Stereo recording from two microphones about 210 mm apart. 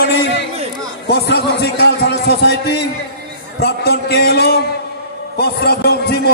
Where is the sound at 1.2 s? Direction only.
50° left (ahead or behind).